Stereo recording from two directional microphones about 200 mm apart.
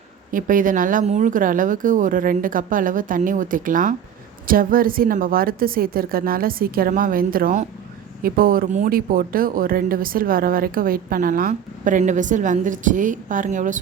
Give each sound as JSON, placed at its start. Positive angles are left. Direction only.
{"t": 0.3, "sound": "speech", "side_deg": -40}